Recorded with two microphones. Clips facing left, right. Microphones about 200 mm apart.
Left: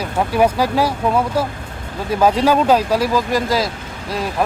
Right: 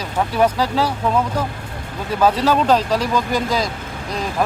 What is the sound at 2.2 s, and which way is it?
Speech, 10° left (ahead or behind).